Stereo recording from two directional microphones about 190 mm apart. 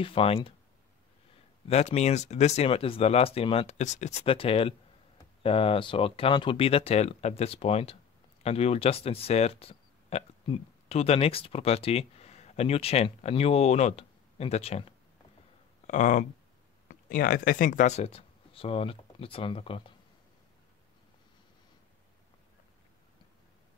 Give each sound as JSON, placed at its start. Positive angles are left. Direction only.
{"t": 0.0, "sound": "speech", "side_deg": 30}
{"t": 1.7, "sound": "speech", "side_deg": 35}